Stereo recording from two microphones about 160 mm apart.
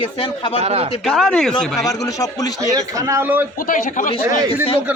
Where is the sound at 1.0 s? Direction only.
Centre (ahead or behind).